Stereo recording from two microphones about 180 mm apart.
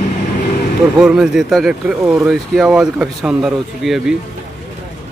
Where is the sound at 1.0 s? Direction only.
5° right (ahead or behind).